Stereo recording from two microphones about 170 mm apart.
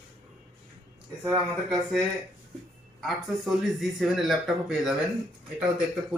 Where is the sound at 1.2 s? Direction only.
Centre (ahead or behind).